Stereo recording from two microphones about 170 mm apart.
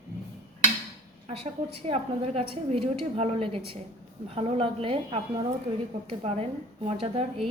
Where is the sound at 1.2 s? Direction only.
35° right (ahead or behind).